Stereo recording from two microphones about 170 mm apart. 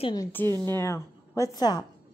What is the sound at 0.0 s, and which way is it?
Speech, 25° left (ahead or behind).